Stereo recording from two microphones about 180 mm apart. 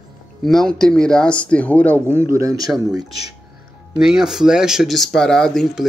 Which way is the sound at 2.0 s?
15° right (ahead or behind).